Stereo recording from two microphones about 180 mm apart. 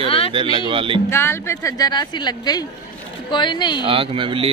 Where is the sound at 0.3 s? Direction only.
25° right (ahead or behind).